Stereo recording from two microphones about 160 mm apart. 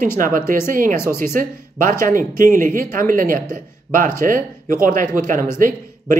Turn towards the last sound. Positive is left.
turn(degrees=-55)  # may be behind; listen again after turning